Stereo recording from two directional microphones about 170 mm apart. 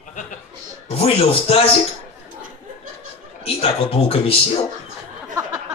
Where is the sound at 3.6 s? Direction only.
35° left (ahead or behind).